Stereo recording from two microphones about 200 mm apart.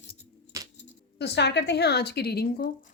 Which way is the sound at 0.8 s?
60° left (ahead or behind).